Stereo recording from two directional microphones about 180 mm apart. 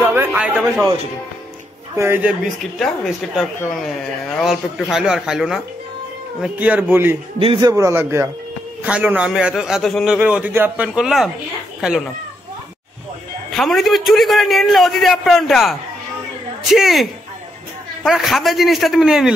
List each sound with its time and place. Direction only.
0.0 s a sound: 10° right (ahead or behind)
2.0 s a man's voice: 10° right (ahead or behind)
7.3 s a man's voice: 30° right (ahead or behind)
7.7 s a man's voice: 15° right (ahead or behind)
13.5 s a man's voice: centre (ahead or behind)